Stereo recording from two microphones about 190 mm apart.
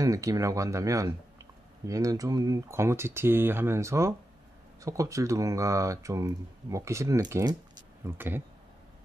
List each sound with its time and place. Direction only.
0.0 s speech: 20° right (ahead or behind)